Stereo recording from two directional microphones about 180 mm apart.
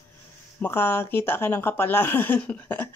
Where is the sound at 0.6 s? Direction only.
10° left (ahead or behind).